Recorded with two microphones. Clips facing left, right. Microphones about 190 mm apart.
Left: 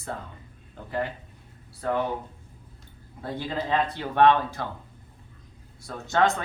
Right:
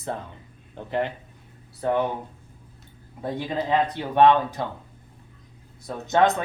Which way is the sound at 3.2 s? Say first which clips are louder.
Right 3 dB; 20° right (ahead or behind).